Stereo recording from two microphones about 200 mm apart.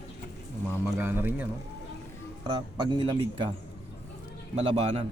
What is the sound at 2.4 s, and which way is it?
Speech, 25° right (ahead or behind).